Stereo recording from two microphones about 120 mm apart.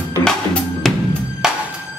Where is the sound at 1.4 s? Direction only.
5° right (ahead or behind).